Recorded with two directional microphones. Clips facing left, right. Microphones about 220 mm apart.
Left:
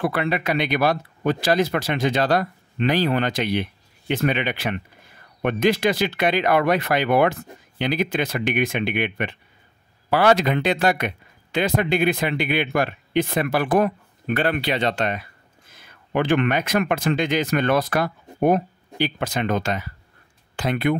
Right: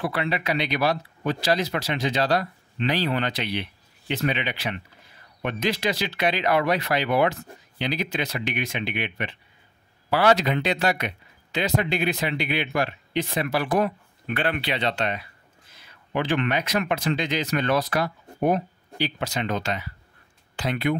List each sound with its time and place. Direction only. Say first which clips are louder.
0.0 s speech: left 4 dB; 50° left (ahead or behind)